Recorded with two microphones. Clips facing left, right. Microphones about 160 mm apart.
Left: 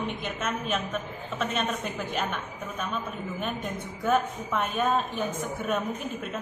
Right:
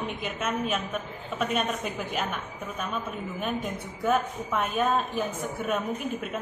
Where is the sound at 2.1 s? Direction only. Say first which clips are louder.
Even; 5° right (ahead or behind).